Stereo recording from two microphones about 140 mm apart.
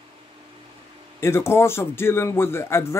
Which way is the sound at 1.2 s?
20° left (ahead or behind).